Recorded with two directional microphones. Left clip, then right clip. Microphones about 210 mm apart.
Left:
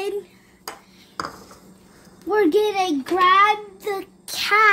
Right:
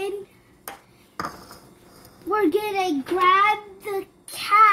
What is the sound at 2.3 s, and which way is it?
A child's voice, 40° left (ahead or behind).